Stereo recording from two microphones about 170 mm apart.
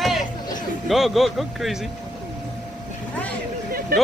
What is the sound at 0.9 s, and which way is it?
Speech, centre (ahead or behind).